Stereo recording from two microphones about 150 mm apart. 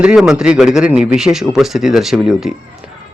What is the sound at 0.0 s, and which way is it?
Speech, 5° right (ahead or behind).